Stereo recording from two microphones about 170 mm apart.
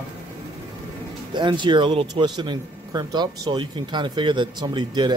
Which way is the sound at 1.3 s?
25° right (ahead or behind).